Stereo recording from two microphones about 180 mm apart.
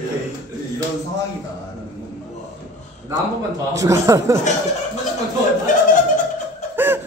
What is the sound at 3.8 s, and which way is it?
Speech, 15° right (ahead or behind).